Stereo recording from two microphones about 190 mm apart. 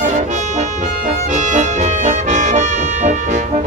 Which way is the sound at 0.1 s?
40° right (ahead or behind).